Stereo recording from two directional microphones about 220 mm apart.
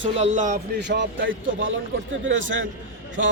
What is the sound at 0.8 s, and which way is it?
A man's voice, 55° right (ahead or behind).